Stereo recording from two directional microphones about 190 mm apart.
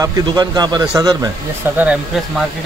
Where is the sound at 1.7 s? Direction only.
5° right (ahead or behind).